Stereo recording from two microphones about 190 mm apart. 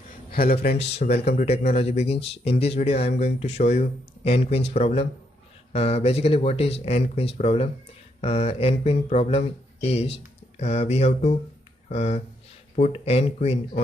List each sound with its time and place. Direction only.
0.3 s a man's voice: 50° left (ahead or behind)
0.7 s speech: 35° left (ahead or behind)